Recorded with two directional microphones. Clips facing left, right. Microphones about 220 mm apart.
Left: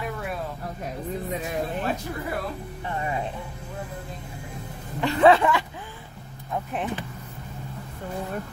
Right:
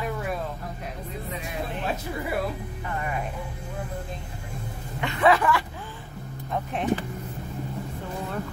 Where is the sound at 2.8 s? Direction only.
25° left (ahead or behind).